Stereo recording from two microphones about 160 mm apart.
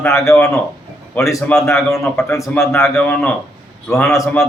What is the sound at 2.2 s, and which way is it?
Speech, 15° left (ahead or behind).